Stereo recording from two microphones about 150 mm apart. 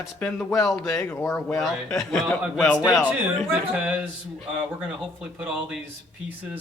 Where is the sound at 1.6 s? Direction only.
Centre (ahead or behind).